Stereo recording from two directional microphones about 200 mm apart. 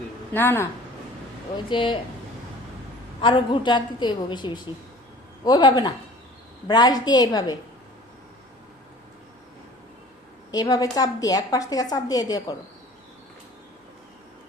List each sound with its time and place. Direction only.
0.3 s speech: 10° left (ahead or behind)
1.5 s a woman's voice: 25° left (ahead or behind)
3.2 s a woman's voice: 25° left (ahead or behind)
10.5 s a woman's voice: 20° left (ahead or behind)